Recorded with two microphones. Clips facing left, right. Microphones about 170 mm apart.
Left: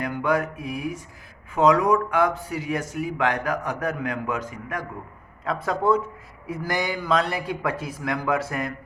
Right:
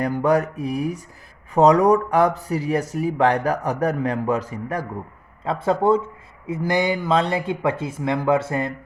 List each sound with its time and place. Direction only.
0.0 s speech: 35° right (ahead or behind)